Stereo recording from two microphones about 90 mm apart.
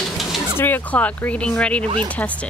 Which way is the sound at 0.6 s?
20° left (ahead or behind).